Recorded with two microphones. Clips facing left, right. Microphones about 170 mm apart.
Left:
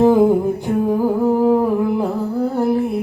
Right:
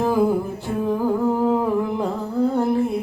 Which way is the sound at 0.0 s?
25° left (ahead or behind).